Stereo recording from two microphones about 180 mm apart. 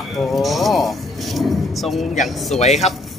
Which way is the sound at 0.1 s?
Centre (ahead or behind).